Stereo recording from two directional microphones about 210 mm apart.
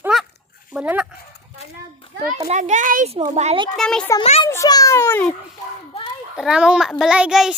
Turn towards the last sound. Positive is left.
turn(degrees=-5)  # may be behind; listen again after turning